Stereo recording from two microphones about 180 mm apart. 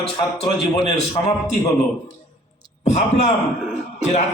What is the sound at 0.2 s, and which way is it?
A man's voice, 30° left (ahead or behind).